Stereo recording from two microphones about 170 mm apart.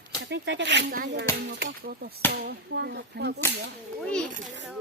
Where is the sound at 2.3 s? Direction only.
65° right (ahead or behind).